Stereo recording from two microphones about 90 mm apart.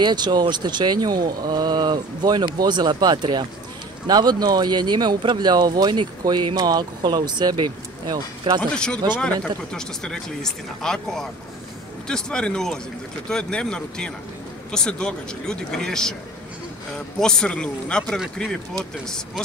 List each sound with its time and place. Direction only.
0.0 s speech: 55° right (ahead or behind)
8.5 s speech: 10° left (ahead or behind)